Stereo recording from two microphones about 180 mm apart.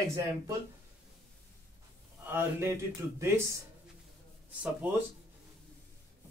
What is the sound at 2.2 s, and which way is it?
Speech, 10° right (ahead or behind).